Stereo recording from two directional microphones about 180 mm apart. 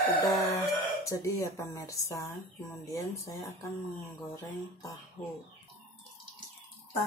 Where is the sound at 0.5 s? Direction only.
15° left (ahead or behind).